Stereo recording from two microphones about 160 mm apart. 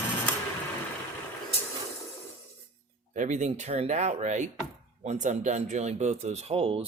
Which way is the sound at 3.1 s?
50° right (ahead or behind).